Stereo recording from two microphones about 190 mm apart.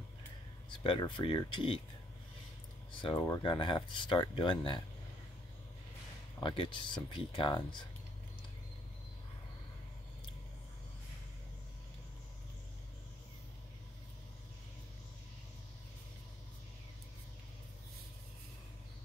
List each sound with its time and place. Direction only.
0.7 s speech: 25° left (ahead or behind)
3.0 s speech: 25° left (ahead or behind)
6.4 s speech: 25° left (ahead or behind)